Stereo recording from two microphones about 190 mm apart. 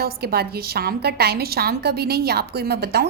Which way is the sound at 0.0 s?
55° right (ahead or behind).